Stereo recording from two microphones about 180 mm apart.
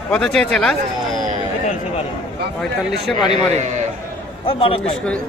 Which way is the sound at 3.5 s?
40° right (ahead or behind).